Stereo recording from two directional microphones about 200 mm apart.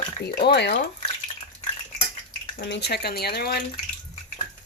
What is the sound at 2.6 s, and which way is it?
Speech, 60° left (ahead or behind).